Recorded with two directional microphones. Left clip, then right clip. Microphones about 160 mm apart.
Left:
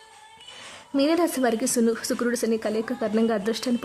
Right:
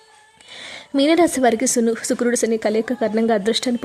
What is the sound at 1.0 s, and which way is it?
Speech, 30° right (ahead or behind).